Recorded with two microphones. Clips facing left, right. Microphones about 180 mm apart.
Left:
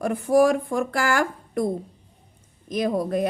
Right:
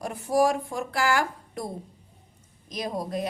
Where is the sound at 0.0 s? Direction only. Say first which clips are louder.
Left 5 dB; 55° left (ahead or behind).